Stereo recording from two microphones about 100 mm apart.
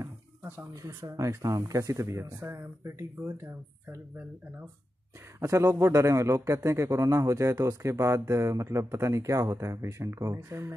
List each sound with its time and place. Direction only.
0.0 s a sound: 20° right (ahead or behind)
1.0 s speech: 35° right (ahead or behind)
5.4 s a man's voice: 35° right (ahead or behind)